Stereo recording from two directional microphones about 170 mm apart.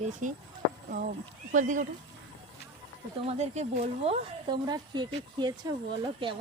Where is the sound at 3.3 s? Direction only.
40° right (ahead or behind).